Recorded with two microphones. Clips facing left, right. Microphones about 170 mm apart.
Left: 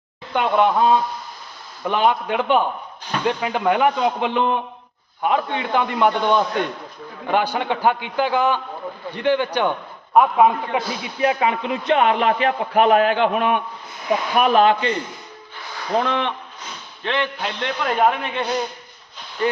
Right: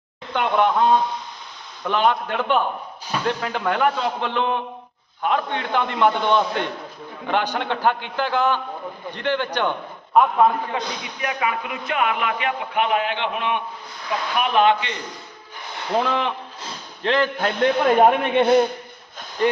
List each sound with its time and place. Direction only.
0.3 s a man's voice: 5° left (ahead or behind)
11.2 s a man's voice: 30° left (ahead or behind)
15.9 s a man's voice: 5° right (ahead or behind)
16.6 s a man's voice: 35° right (ahead or behind); by 18.7 s 55° right (ahead or behind)